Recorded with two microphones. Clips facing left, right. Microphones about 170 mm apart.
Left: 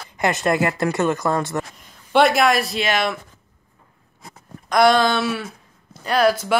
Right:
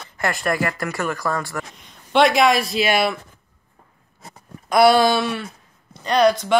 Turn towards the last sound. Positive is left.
turn(degrees=5)  # may be behind; listen again after turning